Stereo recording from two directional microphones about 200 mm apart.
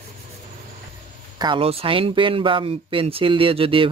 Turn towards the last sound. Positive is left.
turn(degrees=-25)  # may be behind; listen again after turning